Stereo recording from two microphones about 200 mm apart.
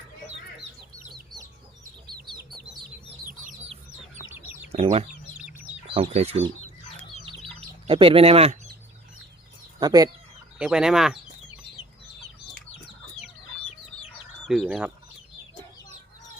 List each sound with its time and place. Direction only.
2.6 s chicken: 45° right (ahead or behind)
4.2 s chicken: 10° right (ahead or behind)
4.7 s speech: 30° right (ahead or behind)
7.3 s bird: 25° right (ahead or behind)
9.8 s chicken: 20° right (ahead or behind)
10.6 s speech: 5° right (ahead or behind)
14.4 s speech: centre (ahead or behind)